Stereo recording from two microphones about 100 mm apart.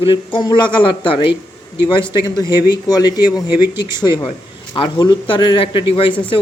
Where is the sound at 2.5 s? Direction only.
45° left (ahead or behind); by 6.1 s 60° left (ahead or behind).